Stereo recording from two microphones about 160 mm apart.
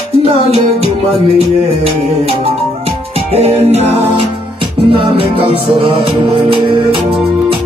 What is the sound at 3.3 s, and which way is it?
Music, 40° right (ahead or behind).